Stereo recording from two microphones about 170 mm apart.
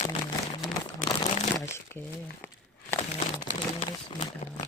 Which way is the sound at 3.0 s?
40° left (ahead or behind).